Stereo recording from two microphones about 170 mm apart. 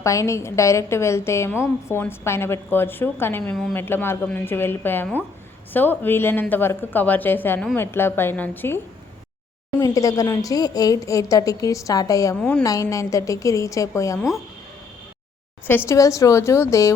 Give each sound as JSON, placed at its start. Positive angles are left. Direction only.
{"t": 0.0, "sound": "a woman's voice", "side_deg": 15}
{"t": 9.8, "sound": "a woman's voice", "side_deg": 20}
{"t": 12.4, "sound": "a woman's voice", "side_deg": 5}
{"t": 12.6, "sound": "a woman's voice", "side_deg": 20}
{"t": 15.9, "sound": "a woman's voice", "side_deg": 20}